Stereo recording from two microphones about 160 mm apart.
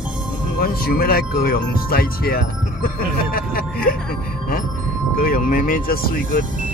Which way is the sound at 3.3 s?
65° left (ahead or behind).